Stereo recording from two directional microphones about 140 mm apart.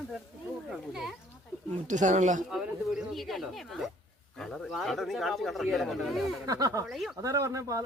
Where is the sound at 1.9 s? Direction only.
60° right (ahead or behind).